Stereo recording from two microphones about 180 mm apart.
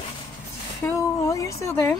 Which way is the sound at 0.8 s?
15° left (ahead or behind).